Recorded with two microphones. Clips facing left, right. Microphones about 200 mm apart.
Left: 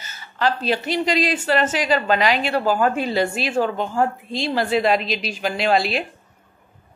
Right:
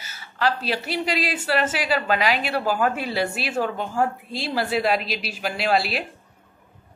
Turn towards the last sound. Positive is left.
turn(degrees=-5)  # may be behind; listen again after turning